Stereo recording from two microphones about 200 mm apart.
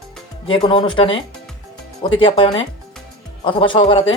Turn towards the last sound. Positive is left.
turn(degrees=25)  # may be behind; listen again after turning